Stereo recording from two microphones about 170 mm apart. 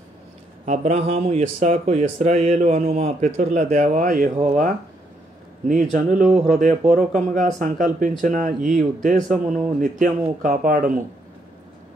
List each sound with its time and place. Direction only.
0.7 s speech: 40° right (ahead or behind); by 10.9 s 55° right (ahead or behind)